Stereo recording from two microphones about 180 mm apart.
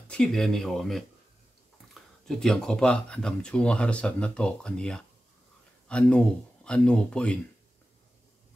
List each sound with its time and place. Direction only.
0.1 s speech: 5° left (ahead or behind)